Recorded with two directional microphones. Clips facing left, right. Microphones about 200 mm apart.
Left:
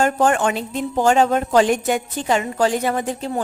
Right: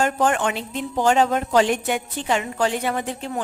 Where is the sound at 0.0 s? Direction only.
45° left (ahead or behind).